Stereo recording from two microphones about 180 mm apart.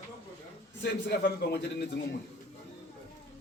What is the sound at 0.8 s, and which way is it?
A man's voice, 70° left (ahead or behind).